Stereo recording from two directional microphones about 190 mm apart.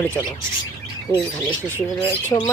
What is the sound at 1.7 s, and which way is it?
Speech, 10° left (ahead or behind).